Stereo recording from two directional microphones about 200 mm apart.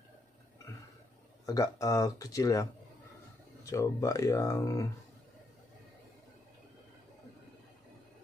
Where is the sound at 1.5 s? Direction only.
15° left (ahead or behind).